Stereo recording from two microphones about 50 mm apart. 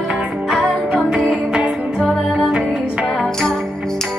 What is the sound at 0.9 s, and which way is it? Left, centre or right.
Music, centre.